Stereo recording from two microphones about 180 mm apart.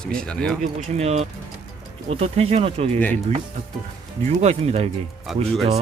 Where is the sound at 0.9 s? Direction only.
35° right (ahead or behind).